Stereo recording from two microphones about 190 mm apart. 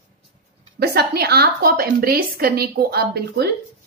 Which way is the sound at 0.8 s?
55° right (ahead or behind).